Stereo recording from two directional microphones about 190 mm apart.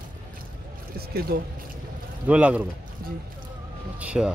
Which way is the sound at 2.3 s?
5° right (ahead or behind).